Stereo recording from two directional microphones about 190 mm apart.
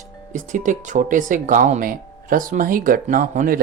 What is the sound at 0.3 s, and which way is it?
Speech, 40° right (ahead or behind).